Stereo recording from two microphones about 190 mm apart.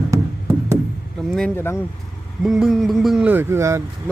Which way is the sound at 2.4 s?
Centre (ahead or behind).